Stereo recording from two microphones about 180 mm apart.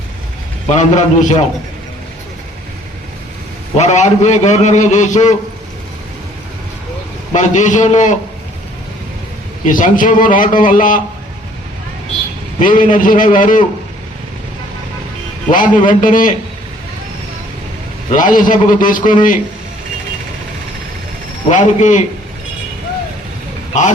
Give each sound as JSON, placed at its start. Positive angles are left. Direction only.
{"t": 0.7, "sound": "a man's voice", "side_deg": 40}
{"t": 3.8, "sound": "a man's voice", "side_deg": 40}
{"t": 7.3, "sound": "a man's voice", "side_deg": 40}
{"t": 9.6, "sound": "a man's voice", "side_deg": 45}
{"t": 12.5, "sound": "a man's voice", "side_deg": 45}
{"t": 15.4, "sound": "a man's voice", "side_deg": 45}
{"t": 18.1, "sound": "a man's voice", "side_deg": 50}
{"t": 21.5, "sound": "a man's voice", "side_deg": 40}